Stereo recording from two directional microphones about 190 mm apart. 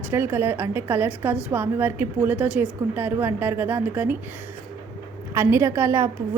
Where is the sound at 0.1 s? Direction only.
10° right (ahead or behind).